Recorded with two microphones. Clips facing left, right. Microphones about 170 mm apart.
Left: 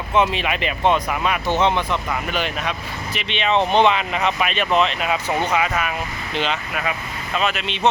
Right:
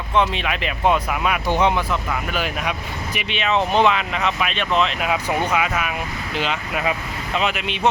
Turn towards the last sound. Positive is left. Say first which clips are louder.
# even
turn(degrees=-10)  # may be behind; listen again after turning